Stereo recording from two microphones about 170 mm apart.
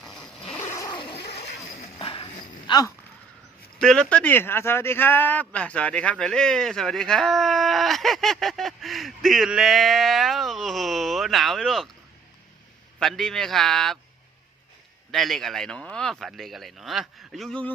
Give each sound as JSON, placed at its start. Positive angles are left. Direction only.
{"t": 0.0, "sound": "zipper", "side_deg": 5}
{"t": 0.8, "sound": "a sound", "side_deg": 25}
{"t": 2.0, "sound": "walk", "side_deg": 30}
{"t": 3.8, "sound": "speech", "side_deg": 5}
{"t": 13.0, "sound": "speech", "side_deg": 0}
{"t": 15.1, "sound": "speech", "side_deg": 0}